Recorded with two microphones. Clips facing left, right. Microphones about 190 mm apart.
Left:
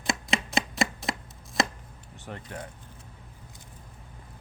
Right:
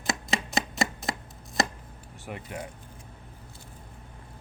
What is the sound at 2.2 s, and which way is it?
Speech, 10° right (ahead or behind).